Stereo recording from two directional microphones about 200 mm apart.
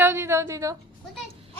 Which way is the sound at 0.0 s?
10° right (ahead or behind).